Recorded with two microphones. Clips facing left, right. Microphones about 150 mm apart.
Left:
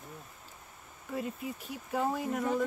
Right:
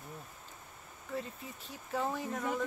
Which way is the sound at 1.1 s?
10° left (ahead or behind).